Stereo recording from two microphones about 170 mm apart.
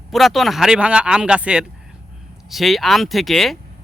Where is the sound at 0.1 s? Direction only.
Centre (ahead or behind).